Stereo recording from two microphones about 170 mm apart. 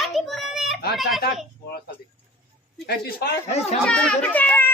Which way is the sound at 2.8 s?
70° left (ahead or behind).